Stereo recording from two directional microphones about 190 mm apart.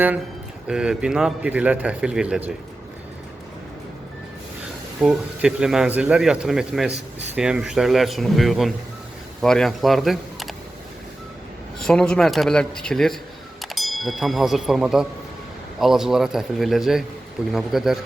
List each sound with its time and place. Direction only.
0.7 s speech: 5° right (ahead or behind)
4.9 s speech: 5° right (ahead or behind)
11.9 s speech: 5° left (ahead or behind)